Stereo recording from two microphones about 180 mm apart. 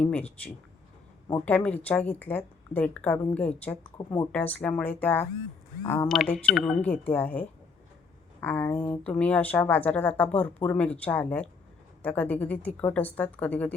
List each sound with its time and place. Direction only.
0.0 s a woman's voice: 10° left (ahead or behind)
1.3 s a woman's voice: 10° left (ahead or behind)
6.1 s a woman's voice: centre (ahead or behind)